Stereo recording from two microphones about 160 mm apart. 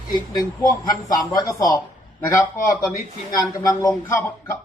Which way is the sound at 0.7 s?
20° left (ahead or behind).